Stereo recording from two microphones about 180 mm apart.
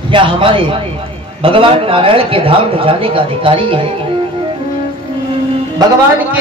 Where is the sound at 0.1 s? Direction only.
30° right (ahead or behind).